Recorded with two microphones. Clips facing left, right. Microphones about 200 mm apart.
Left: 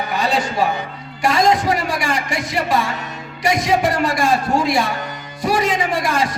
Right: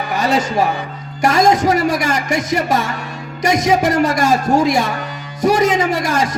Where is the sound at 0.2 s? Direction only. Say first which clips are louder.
Right 3 dB; 45° right (ahead or behind).